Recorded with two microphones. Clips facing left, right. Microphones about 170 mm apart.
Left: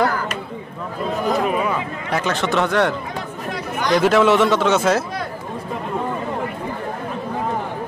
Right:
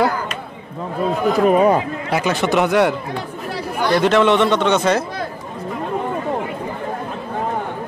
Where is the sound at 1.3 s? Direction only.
40° right (ahead or behind).